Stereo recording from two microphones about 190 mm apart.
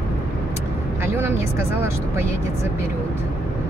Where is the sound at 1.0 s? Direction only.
10° right (ahead or behind).